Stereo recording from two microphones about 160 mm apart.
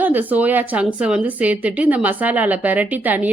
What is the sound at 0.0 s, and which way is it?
A woman's voice, 10° right (ahead or behind).